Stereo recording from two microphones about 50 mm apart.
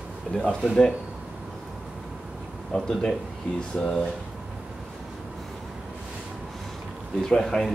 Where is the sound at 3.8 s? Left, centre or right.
Centre.